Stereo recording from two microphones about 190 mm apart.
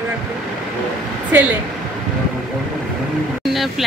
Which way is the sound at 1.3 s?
10° right (ahead or behind).